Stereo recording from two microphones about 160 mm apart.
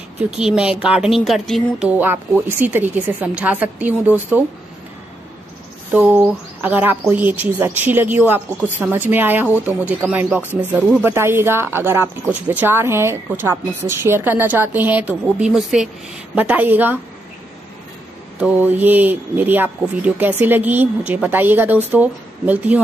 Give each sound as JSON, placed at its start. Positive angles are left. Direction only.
{"t": 0.3, "sound": "speech", "side_deg": -5}
{"t": 5.9, "sound": "speech", "side_deg": -10}
{"t": 18.4, "sound": "speech", "side_deg": -10}